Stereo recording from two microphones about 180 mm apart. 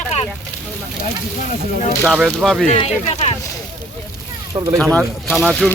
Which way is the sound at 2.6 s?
35° left (ahead or behind).